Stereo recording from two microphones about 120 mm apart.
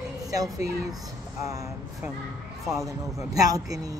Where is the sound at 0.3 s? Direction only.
30° right (ahead or behind).